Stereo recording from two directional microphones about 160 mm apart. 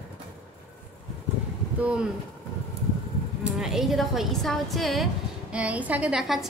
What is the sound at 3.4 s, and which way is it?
A woman's voice, 5° right (ahead or behind).